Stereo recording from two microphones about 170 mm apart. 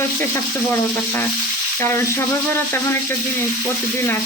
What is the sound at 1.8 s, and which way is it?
Speech, 15° left (ahead or behind).